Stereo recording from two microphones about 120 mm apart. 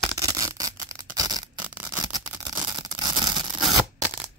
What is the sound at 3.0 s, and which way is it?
Tearing, 40° right (ahead or behind).